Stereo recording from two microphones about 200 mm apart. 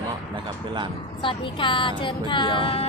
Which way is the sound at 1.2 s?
25° left (ahead or behind).